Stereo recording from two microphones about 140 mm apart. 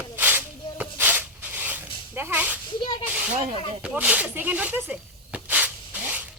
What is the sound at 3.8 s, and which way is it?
Speech, 10° right (ahead or behind).